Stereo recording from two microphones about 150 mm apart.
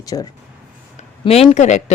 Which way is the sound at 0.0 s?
25° left (ahead or behind).